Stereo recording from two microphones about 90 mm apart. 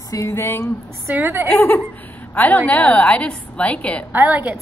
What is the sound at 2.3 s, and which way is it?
A woman's voice, 15° left (ahead or behind).